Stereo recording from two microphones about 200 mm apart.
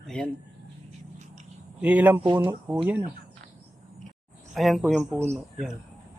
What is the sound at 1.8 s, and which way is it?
A man's voice, 10° right (ahead or behind).